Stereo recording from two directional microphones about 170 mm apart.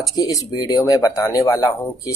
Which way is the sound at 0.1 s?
25° left (ahead or behind).